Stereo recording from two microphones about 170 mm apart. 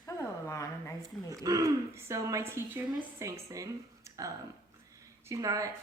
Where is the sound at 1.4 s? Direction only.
20° right (ahead or behind).